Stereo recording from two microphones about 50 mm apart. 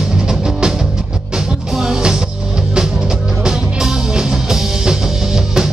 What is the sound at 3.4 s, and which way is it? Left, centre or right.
Music, centre.